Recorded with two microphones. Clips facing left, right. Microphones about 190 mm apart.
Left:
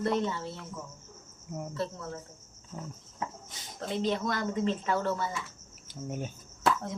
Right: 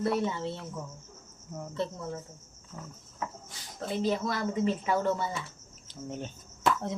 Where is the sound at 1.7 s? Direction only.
20° right (ahead or behind).